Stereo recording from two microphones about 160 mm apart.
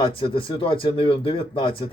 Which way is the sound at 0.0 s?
35° left (ahead or behind).